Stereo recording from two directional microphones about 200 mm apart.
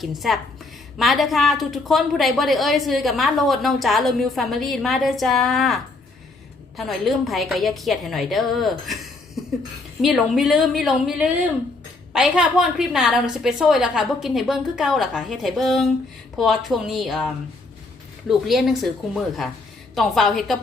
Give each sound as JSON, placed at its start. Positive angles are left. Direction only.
{"t": 0.0, "sound": "a woman's voice", "side_deg": 0}